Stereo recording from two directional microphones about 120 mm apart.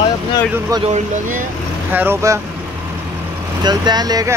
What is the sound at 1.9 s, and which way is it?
Speech, 15° right (ahead or behind).